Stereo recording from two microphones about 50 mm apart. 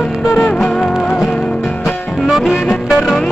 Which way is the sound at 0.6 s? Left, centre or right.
Centre.